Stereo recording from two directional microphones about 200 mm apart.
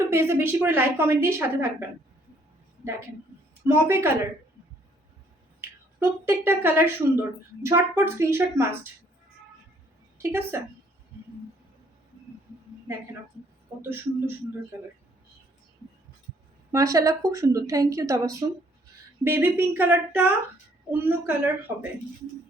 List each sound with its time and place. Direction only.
0.1 s speech: 10° right (ahead or behind)
3.7 s speech: 10° right (ahead or behind)
5.5 s speech: 10° right (ahead or behind)
10.2 s speech: 10° right (ahead or behind)
13.8 s speech: 10° right (ahead or behind)
16.7 s speech: 15° right (ahead or behind)